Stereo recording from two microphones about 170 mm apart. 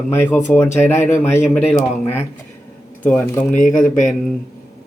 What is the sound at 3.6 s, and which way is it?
Speech, 50° left (ahead or behind).